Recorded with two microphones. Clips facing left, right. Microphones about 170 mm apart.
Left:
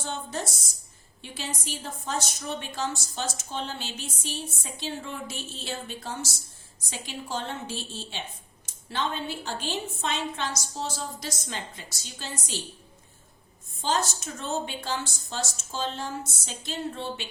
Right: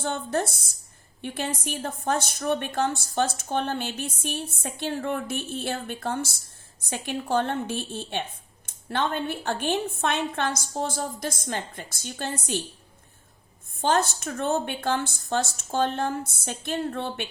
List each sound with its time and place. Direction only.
0.0 s a woman's voice: 55° right (ahead or behind)
13.7 s a woman's voice: 55° right (ahead or behind)